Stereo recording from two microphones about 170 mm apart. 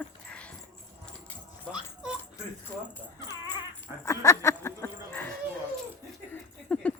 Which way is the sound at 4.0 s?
15° left (ahead or behind).